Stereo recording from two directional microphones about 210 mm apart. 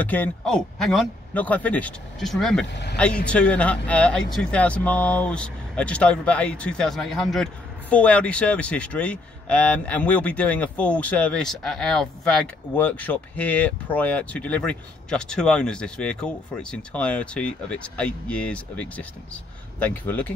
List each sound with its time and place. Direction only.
0.0 s a man's voice: 10° left (ahead or behind)